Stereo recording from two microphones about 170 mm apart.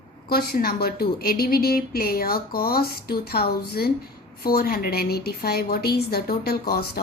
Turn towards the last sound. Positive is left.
turn(degrees=70)  # may be behind; listen again after turning